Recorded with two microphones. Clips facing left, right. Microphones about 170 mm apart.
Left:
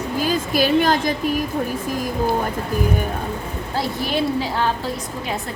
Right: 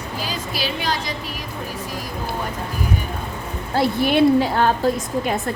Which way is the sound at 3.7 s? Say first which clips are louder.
Right 5 dB; 60° right (ahead or behind).